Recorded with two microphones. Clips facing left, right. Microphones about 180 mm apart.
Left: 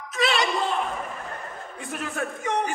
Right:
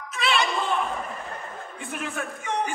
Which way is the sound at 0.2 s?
40° left (ahead or behind).